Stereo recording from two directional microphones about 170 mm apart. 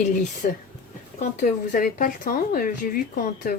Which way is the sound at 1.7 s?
50° left (ahead or behind).